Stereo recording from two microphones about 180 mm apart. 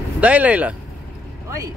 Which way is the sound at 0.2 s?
10° right (ahead or behind).